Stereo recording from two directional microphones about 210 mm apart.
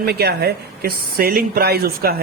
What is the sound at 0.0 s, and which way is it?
Speech, 50° right (ahead or behind).